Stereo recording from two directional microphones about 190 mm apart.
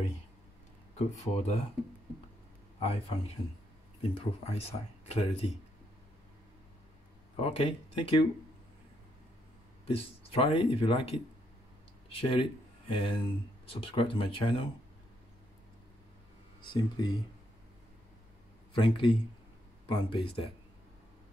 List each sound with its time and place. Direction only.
0.9 s speech: 35° left (ahead or behind)
2.8 s speech: 30° left (ahead or behind)
7.3 s speech: 30° left (ahead or behind)
9.8 s speech: 30° left (ahead or behind)
16.7 s speech: 25° left (ahead or behind)
18.7 s speech: 25° left (ahead or behind)